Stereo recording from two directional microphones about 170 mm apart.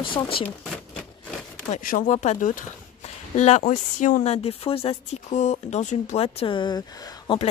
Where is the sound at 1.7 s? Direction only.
50° left (ahead or behind); by 7.4 s 20° left (ahead or behind).